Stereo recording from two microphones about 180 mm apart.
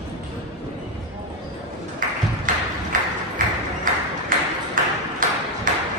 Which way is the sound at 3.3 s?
50° right (ahead or behind).